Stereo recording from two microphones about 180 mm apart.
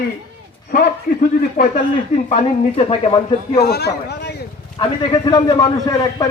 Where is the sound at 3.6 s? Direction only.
65° left (ahead or behind).